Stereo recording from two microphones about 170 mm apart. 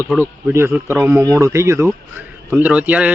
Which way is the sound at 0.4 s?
15° right (ahead or behind).